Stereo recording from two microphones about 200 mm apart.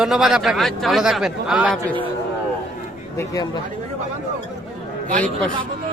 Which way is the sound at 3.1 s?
20° left (ahead or behind).